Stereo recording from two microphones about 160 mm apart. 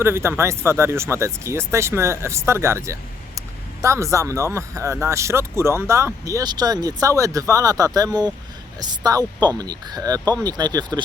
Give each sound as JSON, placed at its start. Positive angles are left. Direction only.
{"t": 0.0, "sound": "speech", "side_deg": -15}